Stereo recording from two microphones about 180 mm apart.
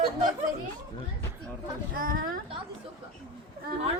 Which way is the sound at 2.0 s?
50° right (ahead or behind).